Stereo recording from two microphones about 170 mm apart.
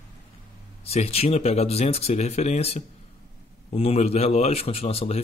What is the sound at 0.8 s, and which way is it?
Speech, 35° left (ahead or behind).